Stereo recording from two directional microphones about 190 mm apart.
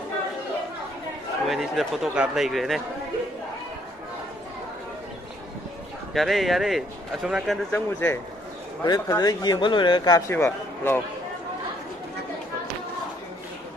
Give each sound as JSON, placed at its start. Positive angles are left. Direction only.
{"t": 1.5, "sound": "speech", "side_deg": 0}
{"t": 6.1, "sound": "speech", "side_deg": 0}
{"t": 7.7, "sound": "a man's voice", "side_deg": 10}
{"t": 8.8, "sound": "a man's voice", "side_deg": 20}